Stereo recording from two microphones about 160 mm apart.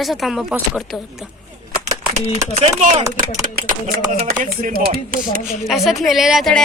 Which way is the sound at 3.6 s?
65° right (ahead or behind).